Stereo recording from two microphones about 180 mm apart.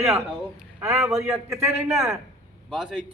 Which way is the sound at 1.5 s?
40° right (ahead or behind).